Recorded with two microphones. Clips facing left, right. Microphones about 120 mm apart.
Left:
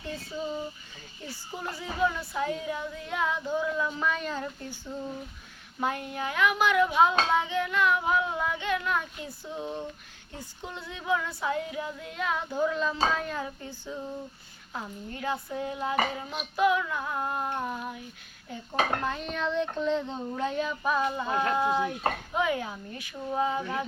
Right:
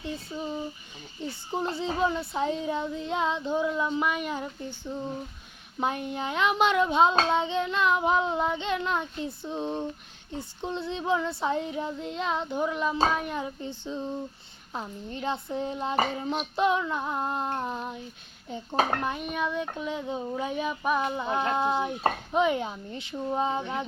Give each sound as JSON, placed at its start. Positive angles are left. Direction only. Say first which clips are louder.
{"t": 1.3, "sound": "speech", "louder": "right 6 dB", "side_deg": -25}
{"t": 5.8, "sound": "speech", "louder": "right 1 dB", "side_deg": -20}